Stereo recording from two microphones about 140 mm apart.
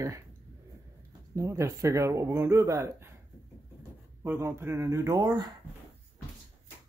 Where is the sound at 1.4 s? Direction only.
20° right (ahead or behind).